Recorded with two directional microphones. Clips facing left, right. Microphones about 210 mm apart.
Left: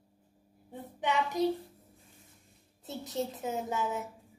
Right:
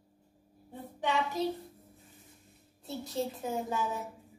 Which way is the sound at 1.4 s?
15° left (ahead or behind).